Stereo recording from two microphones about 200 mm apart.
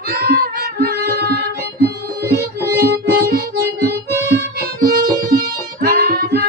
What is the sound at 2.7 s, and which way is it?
Music, 50° right (ahead or behind).